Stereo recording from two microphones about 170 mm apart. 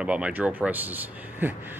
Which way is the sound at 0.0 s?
5° right (ahead or behind).